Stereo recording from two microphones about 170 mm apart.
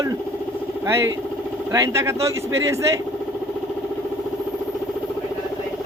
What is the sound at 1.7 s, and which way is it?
A man's voice, 15° right (ahead or behind).